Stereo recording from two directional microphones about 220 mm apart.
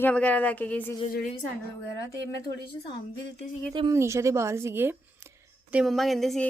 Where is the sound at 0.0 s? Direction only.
5° left (ahead or behind).